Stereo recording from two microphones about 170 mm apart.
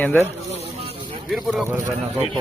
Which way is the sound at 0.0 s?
10° left (ahead or behind).